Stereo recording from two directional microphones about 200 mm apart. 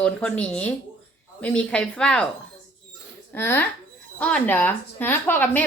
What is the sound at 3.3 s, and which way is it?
Speech, 10° left (ahead or behind).